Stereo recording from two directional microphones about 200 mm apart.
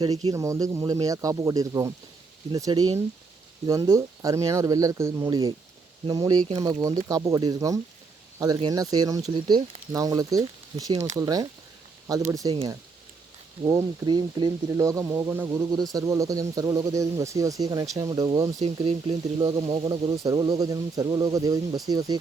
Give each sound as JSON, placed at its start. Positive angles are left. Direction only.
{"t": 0.3, "sound": "speech", "side_deg": -15}
{"t": 10.9, "sound": "speech", "side_deg": -35}
{"t": 11.2, "sound": "speech", "side_deg": -15}
{"t": 13.7, "sound": "speech", "side_deg": -15}
{"t": 18.6, "sound": "speech", "side_deg": -30}